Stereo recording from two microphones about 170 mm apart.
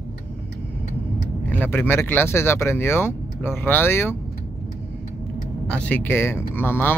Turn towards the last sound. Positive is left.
turn(degrees=10)  # may be behind; listen again after turning